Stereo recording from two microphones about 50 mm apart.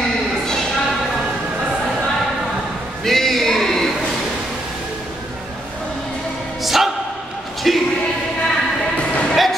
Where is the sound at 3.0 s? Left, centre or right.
Centre.